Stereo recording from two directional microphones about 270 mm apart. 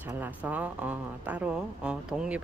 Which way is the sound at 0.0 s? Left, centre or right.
Centre.